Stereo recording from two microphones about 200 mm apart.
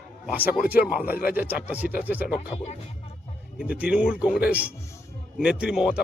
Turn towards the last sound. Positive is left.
turn(degrees=-5)  # may be behind; listen again after turning